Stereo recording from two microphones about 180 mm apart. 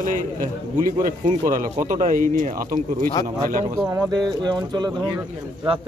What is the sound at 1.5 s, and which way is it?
Speech, 45° right (ahead or behind).